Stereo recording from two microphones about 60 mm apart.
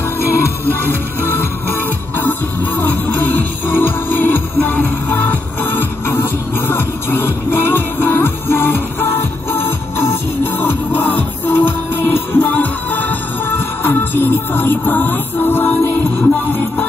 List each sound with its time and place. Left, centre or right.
0.2 s music: left